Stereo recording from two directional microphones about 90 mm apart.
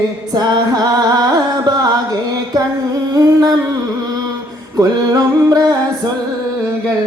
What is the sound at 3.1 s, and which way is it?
Humming, 40° right (ahead or behind).